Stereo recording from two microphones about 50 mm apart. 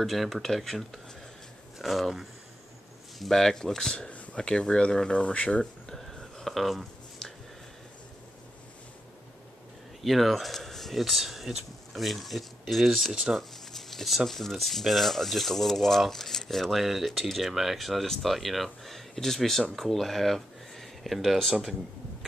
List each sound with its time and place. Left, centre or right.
0.0 s speech: centre; by 5.6 s left
5.6 s a sound: centre
10.0 s speech: centre
12.9 s speech: centre
13.4 s speech: centre